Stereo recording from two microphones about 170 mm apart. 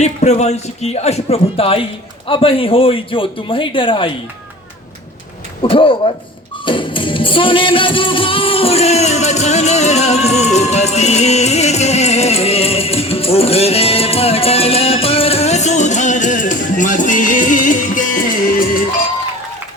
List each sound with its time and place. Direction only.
0.0 s music: 40° left (ahead or behind)
5.6 s music: 30° left (ahead or behind); by 18.0 s 50° left (ahead or behind)